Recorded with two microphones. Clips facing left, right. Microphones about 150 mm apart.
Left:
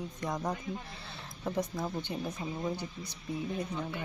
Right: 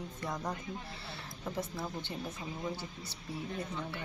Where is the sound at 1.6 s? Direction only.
20° left (ahead or behind).